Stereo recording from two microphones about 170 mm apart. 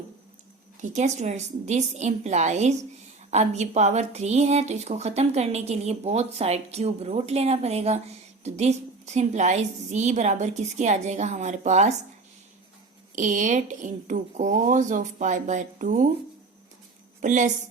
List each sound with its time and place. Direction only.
0.8 s a woman's voice: 45° right (ahead or behind)
13.1 s speech: 45° right (ahead or behind)
17.2 s speech: 45° right (ahead or behind)